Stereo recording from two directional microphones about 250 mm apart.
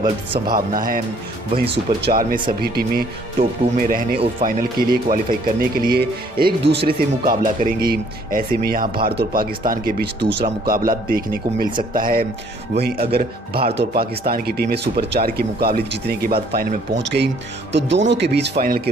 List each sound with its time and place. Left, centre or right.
0.5 s speech: right
2.0 s speech: right